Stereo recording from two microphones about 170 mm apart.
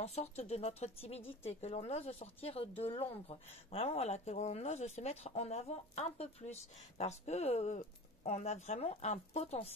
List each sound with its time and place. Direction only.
0.0 s speech: 40° left (ahead or behind)